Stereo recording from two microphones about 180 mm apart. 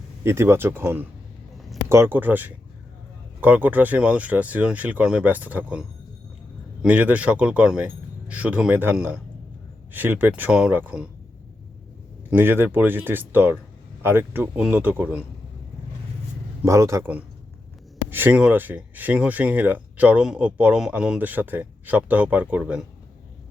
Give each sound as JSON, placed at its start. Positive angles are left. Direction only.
{"t": 0.3, "sound": "speech", "side_deg": -15}
{"t": 12.3, "sound": "speech", "side_deg": -10}
{"t": 16.6, "sound": "speech", "side_deg": -15}